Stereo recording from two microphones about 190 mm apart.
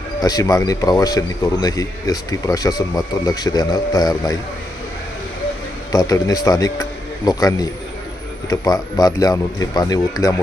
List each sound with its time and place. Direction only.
0.2 s a man's voice: 20° left (ahead or behind)
5.9 s a man's voice: 20° left (ahead or behind)